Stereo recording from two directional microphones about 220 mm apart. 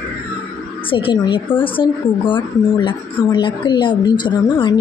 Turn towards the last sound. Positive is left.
turn(degrees=20)  # may be behind; listen again after turning